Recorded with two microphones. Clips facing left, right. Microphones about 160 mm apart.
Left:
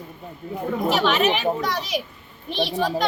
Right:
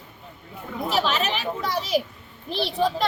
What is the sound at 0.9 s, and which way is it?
Speech, 30° right (ahead or behind).